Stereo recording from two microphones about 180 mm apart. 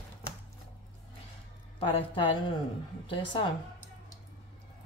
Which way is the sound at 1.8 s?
30° left (ahead or behind).